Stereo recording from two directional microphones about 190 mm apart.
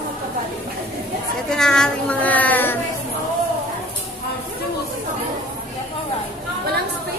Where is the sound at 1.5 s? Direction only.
5° left (ahead or behind).